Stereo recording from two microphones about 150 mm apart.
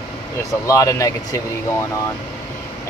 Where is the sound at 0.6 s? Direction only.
20° left (ahead or behind).